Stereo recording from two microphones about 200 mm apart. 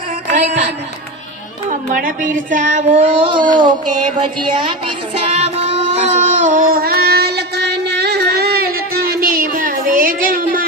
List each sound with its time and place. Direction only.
0.3 s a woman's voice: 35° right (ahead or behind)
1.9 s child singing: 45° right (ahead or behind); by 3.8 s 25° right (ahead or behind)
4.2 s music: 25° right (ahead or behind); by 10.6 s 45° right (ahead or behind)